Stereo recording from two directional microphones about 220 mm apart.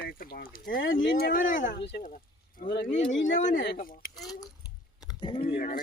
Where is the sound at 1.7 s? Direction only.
50° left (ahead or behind).